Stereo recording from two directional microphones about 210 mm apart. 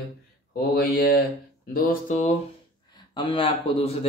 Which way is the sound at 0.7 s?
45° left (ahead or behind).